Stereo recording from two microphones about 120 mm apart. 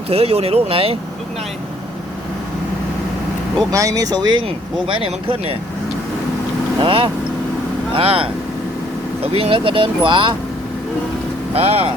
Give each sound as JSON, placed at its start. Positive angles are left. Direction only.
{"t": 0.1, "sound": "speech", "side_deg": -55}
{"t": 3.7, "sound": "speech", "side_deg": -30}
{"t": 4.4, "sound": "speech", "side_deg": -50}
{"t": 6.8, "sound": "speech", "side_deg": -45}
{"t": 11.5, "sound": "speech", "side_deg": -55}